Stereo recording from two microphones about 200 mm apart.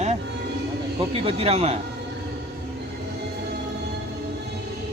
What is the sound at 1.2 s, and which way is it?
Speech, 30° right (ahead or behind).